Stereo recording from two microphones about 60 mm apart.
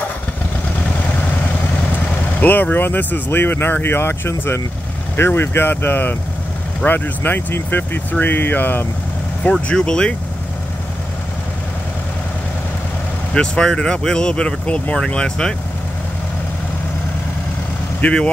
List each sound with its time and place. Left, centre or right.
2.3 s speech: left
9.5 s speech: centre
13.3 s speech: centre
18.0 s speech: centre